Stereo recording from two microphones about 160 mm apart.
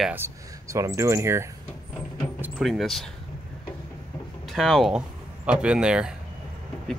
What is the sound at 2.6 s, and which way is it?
Speech, centre (ahead or behind).